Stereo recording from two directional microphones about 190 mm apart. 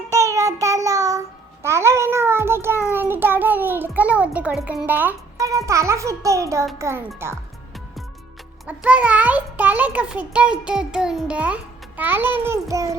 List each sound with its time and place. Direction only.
0.1 s child singing: 15° right (ahead or behind)
4.4 s a child's voice: 5° right (ahead or behind)
8.6 s a child's voice: 5° right (ahead or behind)